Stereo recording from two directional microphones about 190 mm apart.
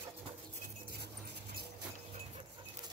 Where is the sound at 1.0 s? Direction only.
60° right (ahead or behind).